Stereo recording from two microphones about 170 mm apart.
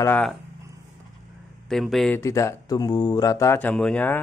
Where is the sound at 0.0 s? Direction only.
10° left (ahead or behind).